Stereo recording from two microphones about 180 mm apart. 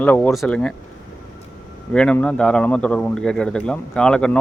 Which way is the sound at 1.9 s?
5° left (ahead or behind).